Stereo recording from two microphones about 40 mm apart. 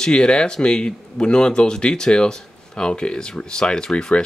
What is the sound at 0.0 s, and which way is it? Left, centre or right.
Speech, left.